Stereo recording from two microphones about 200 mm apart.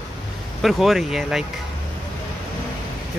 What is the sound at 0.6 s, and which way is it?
Speech, centre (ahead or behind).